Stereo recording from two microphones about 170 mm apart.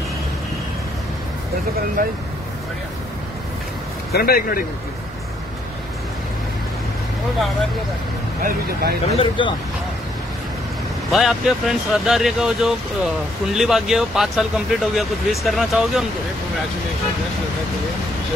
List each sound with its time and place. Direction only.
2.0 s speech: 60° right (ahead or behind)
4.1 s speech: 65° left (ahead or behind)
8.4 s speech: 60° right (ahead or behind)
9.1 s speech: 35° left (ahead or behind)
11.1 s speech: centre (ahead or behind)